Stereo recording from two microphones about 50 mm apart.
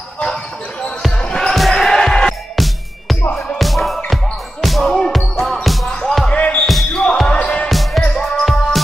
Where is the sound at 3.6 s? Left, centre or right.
Centre.